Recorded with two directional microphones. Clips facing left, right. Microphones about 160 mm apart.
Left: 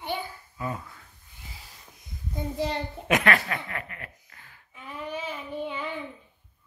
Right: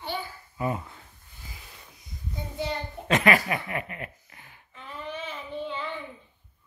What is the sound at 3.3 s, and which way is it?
Speech, 15° right (ahead or behind).